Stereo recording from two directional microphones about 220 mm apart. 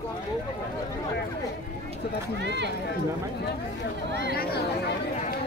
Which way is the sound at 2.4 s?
50° right (ahead or behind).